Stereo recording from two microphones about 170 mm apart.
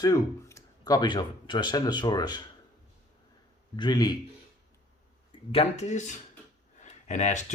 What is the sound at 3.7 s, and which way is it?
Speech, 25° left (ahead or behind).